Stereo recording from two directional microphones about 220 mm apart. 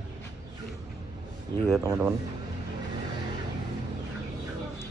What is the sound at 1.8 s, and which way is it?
Speech, 10° right (ahead or behind).